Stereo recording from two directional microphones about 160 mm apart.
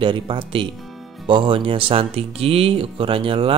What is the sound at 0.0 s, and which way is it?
Speech, 30° right (ahead or behind).